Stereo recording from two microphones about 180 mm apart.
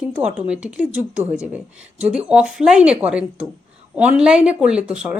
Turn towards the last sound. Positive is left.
turn(degrees=-5)  # may be behind; listen again after turning